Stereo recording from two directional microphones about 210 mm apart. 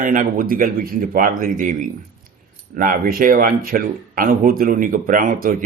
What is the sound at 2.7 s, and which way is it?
Speech, 40° right (ahead or behind).